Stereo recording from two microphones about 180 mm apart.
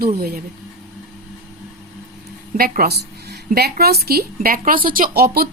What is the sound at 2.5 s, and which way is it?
A woman's voice, 55° right (ahead or behind).